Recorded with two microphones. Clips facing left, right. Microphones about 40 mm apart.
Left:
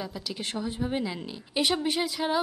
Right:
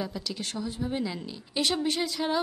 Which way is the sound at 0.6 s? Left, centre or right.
Left.